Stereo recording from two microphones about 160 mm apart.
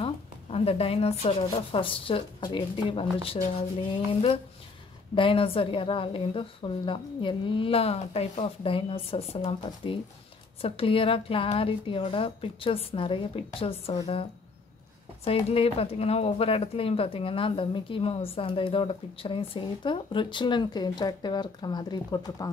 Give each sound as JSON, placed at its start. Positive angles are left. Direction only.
{"t": 0.0, "sound": "a woman's voice", "side_deg": 35}
{"t": 5.1, "sound": "a woman's voice", "side_deg": 35}
{"t": 15.2, "sound": "a woman's voice", "side_deg": 35}